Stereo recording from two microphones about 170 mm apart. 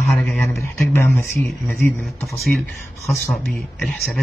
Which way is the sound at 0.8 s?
15° left (ahead or behind).